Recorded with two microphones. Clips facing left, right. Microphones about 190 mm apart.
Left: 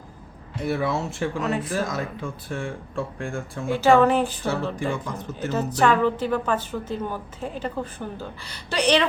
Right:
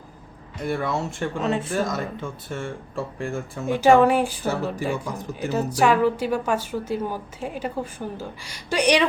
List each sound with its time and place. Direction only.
0.6 s speech: 5° left (ahead or behind)
1.4 s speech: 25° right (ahead or behind)
1.7 s speech: centre (ahead or behind)
3.7 s speech: 15° right (ahead or behind)